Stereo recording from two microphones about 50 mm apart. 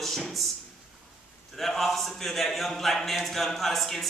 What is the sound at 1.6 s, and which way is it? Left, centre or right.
A man's voice, centre.